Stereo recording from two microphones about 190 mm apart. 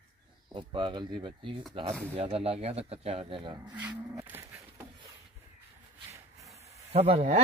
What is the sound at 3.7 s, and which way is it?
Cattle, 10° right (ahead or behind).